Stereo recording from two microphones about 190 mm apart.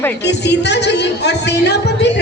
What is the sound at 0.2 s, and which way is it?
A woman's voice, 65° left (ahead or behind).